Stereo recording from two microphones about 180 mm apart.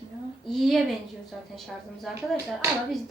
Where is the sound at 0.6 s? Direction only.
Centre (ahead or behind).